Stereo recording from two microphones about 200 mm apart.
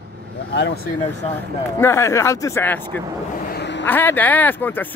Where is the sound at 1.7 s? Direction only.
10° left (ahead or behind).